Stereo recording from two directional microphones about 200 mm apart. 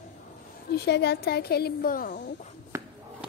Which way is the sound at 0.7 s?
55° left (ahead or behind).